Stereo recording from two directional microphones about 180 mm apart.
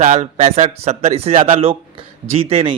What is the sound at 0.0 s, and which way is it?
A man's voice, 40° right (ahead or behind).